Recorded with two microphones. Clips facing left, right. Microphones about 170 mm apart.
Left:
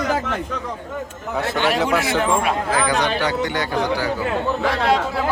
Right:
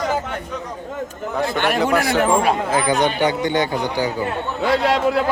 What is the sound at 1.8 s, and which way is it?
Speech, centre (ahead or behind).